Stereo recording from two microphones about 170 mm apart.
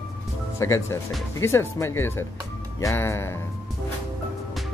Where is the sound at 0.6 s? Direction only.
15° left (ahead or behind).